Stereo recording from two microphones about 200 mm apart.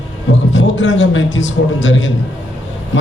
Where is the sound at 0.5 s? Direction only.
65° left (ahead or behind).